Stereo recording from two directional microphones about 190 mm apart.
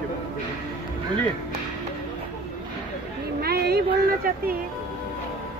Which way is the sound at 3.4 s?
55° right (ahead or behind).